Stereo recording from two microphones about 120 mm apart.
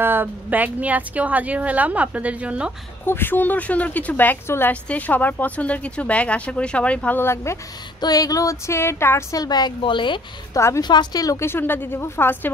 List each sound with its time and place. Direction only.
0.0 s speech: 15° right (ahead or behind)
3.1 s speech: 15° left (ahead or behind)
8.0 s a woman's voice: 30° left (ahead or behind)
9.4 s a woman's voice: 35° left (ahead or behind)
10.5 s a woman's voice: 25° left (ahead or behind)
10.8 s a woman's voice: 35° left (ahead or behind); by 12.4 s 15° left (ahead or behind)